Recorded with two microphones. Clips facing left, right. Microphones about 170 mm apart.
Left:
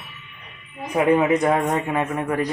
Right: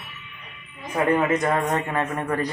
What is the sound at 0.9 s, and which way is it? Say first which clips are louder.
Speech: left 3 dB; 10° left (ahead or behind).